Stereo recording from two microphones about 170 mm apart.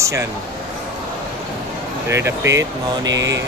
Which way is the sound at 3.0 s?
90° right.